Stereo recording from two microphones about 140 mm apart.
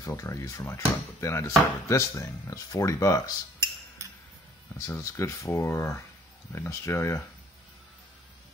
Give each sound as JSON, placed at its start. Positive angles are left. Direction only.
{"t": 0.0, "sound": "speech", "side_deg": 25}
{"t": 4.7, "sound": "speech", "side_deg": 20}